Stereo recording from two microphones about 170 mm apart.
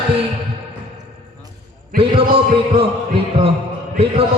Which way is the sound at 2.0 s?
30° right (ahead or behind).